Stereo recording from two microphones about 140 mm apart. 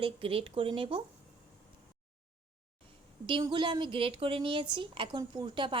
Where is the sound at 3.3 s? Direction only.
35° right (ahead or behind).